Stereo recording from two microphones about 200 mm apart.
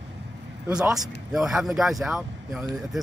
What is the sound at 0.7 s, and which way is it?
Speech, 5° right (ahead or behind).